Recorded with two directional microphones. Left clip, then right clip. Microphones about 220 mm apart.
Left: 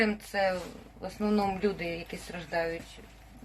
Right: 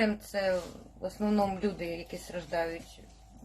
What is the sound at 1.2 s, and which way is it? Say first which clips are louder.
A woman's voice: left 1 dB; 10° right (ahead or behind).